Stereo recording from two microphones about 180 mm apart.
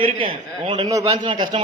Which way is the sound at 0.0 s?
30° right (ahead or behind).